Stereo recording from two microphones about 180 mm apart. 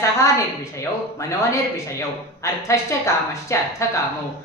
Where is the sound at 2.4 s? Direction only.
15° left (ahead or behind).